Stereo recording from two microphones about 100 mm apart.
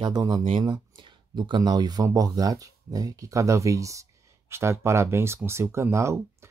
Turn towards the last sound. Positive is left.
turn(degrees=-30)  # may be behind; listen again after turning